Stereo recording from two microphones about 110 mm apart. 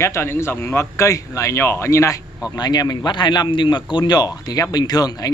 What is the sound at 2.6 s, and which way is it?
Speech, 40° left (ahead or behind).